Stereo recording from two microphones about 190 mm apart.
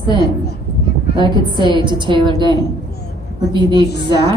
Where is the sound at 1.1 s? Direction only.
25° right (ahead or behind).